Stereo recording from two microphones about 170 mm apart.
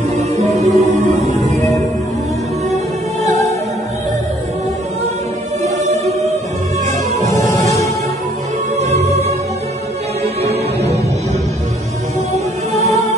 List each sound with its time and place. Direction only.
0.6 s music: 40° right (ahead or behind)
7.2 s music: 20° left (ahead or behind)
8.7 s music: 40° right (ahead or behind)